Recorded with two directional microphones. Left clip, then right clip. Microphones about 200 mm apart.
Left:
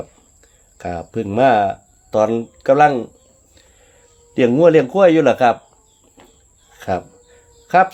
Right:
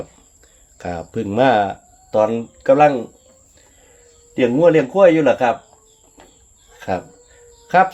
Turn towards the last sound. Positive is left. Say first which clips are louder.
# left 1 dB
turn(degrees=20)  # may be behind; listen again after turning